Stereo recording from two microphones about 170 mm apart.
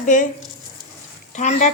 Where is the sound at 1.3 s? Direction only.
45° left (ahead or behind).